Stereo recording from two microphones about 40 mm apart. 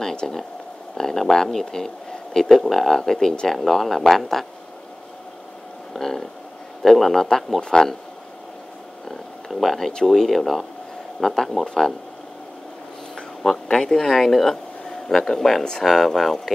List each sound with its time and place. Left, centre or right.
0.0 s a sound: centre
0.9 s speech: centre
5.9 s speech: centre
7.6 s speech: centre
9.5 s speech: centre
13.1 s speech: centre